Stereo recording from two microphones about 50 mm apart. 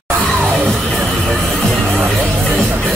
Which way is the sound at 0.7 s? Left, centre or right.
Centre.